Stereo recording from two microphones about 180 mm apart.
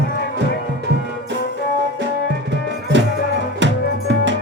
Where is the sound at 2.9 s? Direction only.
85° right.